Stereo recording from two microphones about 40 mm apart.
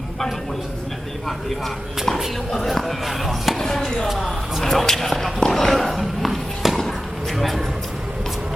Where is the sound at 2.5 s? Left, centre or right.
Centre.